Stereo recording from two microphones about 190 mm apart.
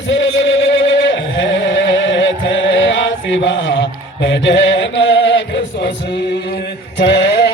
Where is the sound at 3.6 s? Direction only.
70° left (ahead or behind).